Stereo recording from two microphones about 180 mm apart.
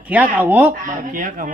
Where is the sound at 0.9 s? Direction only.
45° right (ahead or behind).